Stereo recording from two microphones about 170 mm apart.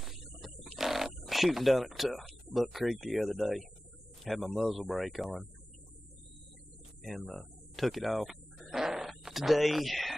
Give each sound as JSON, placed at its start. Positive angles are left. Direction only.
{"t": 0.0, "sound": "a sound", "side_deg": 0}
{"t": 4.2, "sound": "speech", "side_deg": 0}
{"t": 7.0, "sound": "speech", "side_deg": 0}